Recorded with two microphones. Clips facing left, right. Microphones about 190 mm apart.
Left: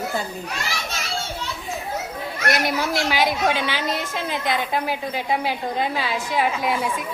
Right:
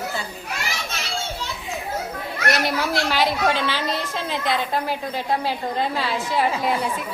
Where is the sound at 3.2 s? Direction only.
5° left (ahead or behind).